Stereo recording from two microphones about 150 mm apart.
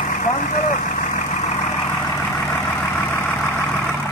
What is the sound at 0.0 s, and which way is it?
Vehicle, 60° left (ahead or behind).